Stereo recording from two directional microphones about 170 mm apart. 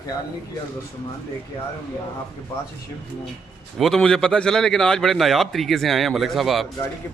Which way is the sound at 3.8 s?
Centre (ahead or behind).